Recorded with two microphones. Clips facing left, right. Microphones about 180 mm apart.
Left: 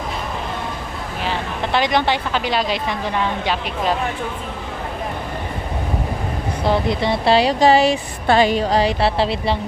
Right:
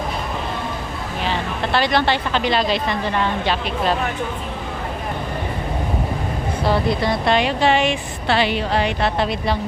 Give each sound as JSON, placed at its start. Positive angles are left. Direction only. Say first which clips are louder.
{"t": 1.3, "sound": "speech", "louder": "even", "side_deg": 15}
{"t": 6.7, "sound": "speech", "louder": "left 1 dB", "side_deg": 20}